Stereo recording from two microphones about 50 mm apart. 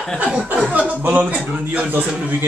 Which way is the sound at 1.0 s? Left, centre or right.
Right.